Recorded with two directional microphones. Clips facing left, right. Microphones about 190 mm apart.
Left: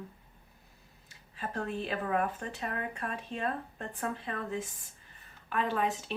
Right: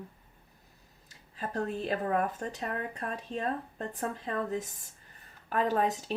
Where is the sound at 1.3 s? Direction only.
40° right (ahead or behind).